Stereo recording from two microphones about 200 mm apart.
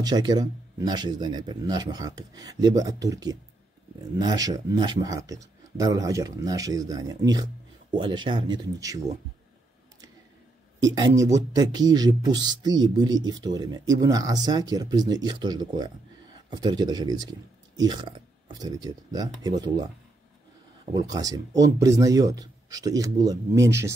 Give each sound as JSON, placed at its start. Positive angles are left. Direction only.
{"t": 0.0, "sound": "speech", "side_deg": -20}
{"t": 10.8, "sound": "speech", "side_deg": -20}